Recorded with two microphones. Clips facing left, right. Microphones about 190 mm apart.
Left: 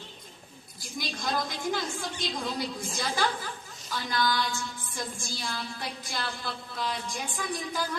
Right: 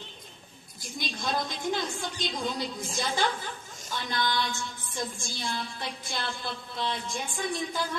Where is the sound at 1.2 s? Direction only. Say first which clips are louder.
Even; 20° right (ahead or behind).